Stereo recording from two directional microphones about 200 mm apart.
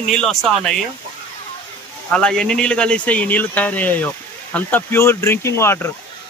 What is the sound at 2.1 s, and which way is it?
Speech, 5° left (ahead or behind).